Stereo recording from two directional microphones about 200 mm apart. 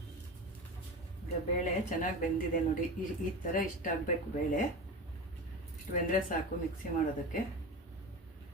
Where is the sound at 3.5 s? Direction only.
40° left (ahead or behind).